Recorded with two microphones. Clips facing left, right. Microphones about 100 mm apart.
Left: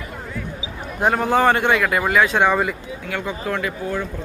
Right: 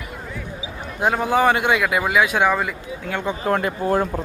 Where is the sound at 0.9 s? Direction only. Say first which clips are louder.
Left 1 dB; 5° right (ahead or behind).